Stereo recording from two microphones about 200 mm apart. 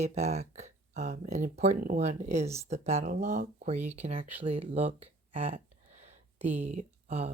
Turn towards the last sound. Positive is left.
turn(degrees=-35)  # may be behind; listen again after turning